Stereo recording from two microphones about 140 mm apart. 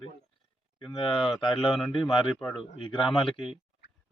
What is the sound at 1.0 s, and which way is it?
Speech, 35° left (ahead or behind).